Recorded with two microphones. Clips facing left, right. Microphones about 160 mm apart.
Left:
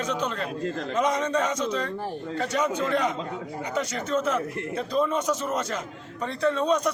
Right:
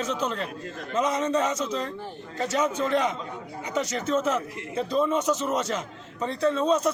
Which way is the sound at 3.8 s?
5° right (ahead or behind).